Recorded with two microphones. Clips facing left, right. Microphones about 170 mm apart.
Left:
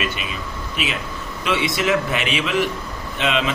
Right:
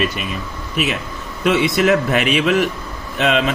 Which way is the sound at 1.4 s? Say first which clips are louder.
Right 6 dB; 45° right (ahead or behind).